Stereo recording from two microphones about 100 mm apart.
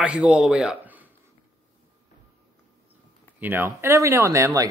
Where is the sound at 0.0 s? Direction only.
10° right (ahead or behind).